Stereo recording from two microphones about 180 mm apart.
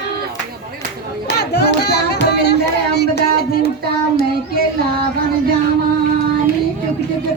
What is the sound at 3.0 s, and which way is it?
Music, 60° left (ahead or behind).